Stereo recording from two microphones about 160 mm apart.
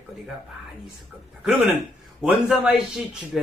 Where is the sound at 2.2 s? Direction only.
5° right (ahead or behind).